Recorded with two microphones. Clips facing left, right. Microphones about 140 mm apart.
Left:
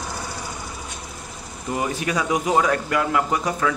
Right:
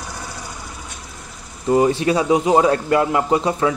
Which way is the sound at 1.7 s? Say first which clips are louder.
Right 9 dB; 30° right (ahead or behind).